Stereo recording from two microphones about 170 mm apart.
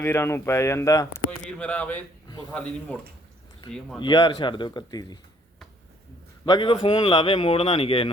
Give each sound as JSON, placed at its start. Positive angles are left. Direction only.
{"t": 0.0, "sound": "speech", "side_deg": 15}
{"t": 1.5, "sound": "speech", "side_deg": 5}
{"t": 4.0, "sound": "a man's voice", "side_deg": 25}
{"t": 6.4, "sound": "a man's voice", "side_deg": 25}